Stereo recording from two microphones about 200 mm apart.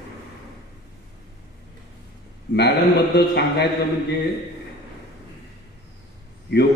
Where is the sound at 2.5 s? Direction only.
55° left (ahead or behind).